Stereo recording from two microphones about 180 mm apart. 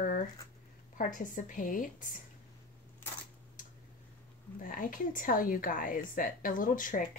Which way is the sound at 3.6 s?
50° left (ahead or behind).